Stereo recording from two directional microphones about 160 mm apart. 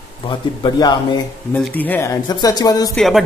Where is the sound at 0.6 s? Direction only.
25° left (ahead or behind).